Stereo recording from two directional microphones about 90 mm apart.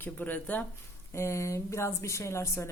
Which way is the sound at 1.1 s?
30° left (ahead or behind).